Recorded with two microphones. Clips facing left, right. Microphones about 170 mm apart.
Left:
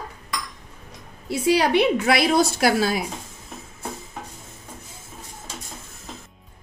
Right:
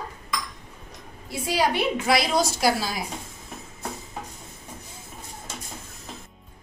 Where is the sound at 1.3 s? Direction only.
70° left (ahead or behind).